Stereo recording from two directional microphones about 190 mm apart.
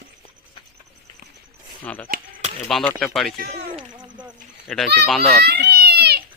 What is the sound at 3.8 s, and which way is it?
Speech, 25° right (ahead or behind).